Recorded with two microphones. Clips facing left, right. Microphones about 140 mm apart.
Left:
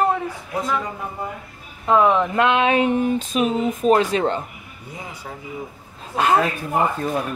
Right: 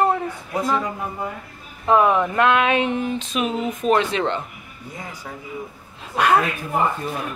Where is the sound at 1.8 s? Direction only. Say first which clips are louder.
Even; 20° right (ahead or behind).